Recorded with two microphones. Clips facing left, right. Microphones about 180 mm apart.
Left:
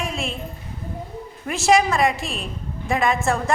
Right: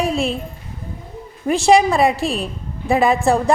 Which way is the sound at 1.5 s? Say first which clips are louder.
Right 5 dB; centre (ahead or behind).